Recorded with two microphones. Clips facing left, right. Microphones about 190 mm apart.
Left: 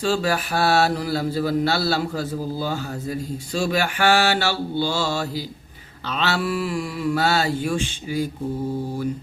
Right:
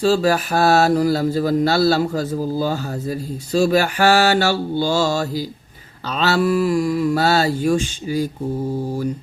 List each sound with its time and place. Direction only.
0.0 s speech: 40° right (ahead or behind)